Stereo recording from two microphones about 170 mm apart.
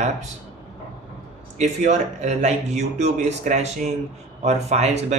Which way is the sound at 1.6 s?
45° right (ahead or behind).